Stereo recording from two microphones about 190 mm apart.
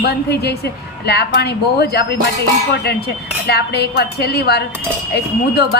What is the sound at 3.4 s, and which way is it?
A woman's voice, 60° left (ahead or behind).